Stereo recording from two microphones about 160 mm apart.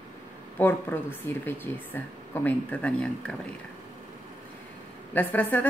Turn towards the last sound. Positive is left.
turn(degrees=10)  # may be behind; listen again after turning